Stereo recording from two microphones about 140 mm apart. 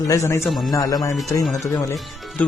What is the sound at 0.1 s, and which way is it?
A man's voice, 20° left (ahead or behind).